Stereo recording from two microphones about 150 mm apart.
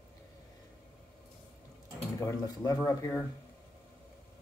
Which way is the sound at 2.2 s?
25° left (ahead or behind).